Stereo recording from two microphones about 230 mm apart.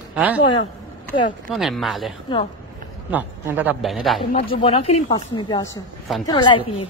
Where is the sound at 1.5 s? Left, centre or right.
Centre.